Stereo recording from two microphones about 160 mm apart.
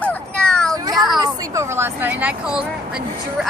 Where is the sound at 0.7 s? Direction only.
25° right (ahead or behind).